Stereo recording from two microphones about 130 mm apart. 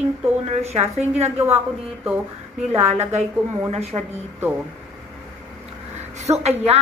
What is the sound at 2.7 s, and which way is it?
A woman's voice, 60° right (ahead or behind).